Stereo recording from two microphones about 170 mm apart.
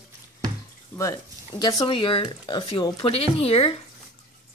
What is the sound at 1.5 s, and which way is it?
Speech, 25° left (ahead or behind).